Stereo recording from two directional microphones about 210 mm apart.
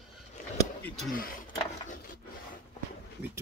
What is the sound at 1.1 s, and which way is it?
Speech, 40° left (ahead or behind).